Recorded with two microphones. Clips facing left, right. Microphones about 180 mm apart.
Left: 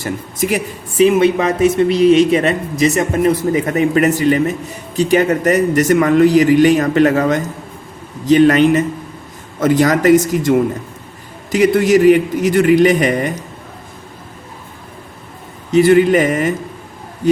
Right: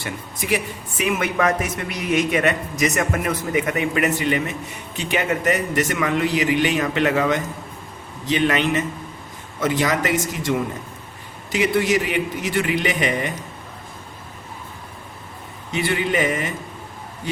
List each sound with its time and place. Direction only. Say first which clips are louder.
0.0 s a man's voice: left 10 dB; 40° left (ahead or behind)
15.7 s a man's voice: left 12 dB; 40° left (ahead or behind)